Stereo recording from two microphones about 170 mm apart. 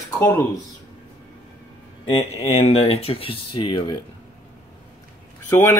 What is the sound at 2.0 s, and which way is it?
Speech, 35° left (ahead or behind).